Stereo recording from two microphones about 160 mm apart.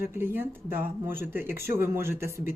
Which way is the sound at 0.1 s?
15° right (ahead or behind).